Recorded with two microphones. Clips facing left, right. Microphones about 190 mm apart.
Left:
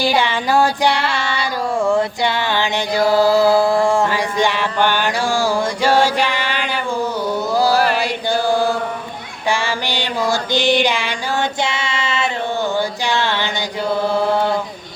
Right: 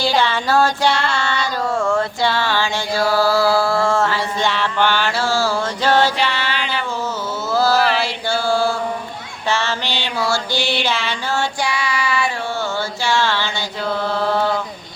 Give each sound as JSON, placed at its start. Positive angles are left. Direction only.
{"t": 0.0, "sound": "female singing", "side_deg": 15}
{"t": 7.5, "sound": "mantra", "side_deg": 15}
{"t": 7.9, "sound": "chant", "side_deg": 15}
{"t": 9.5, "sound": "music", "side_deg": 10}
{"t": 12.7, "sound": "a sound", "side_deg": 15}